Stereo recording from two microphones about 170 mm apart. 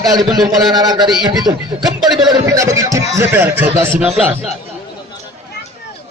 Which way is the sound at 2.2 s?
25° right (ahead or behind).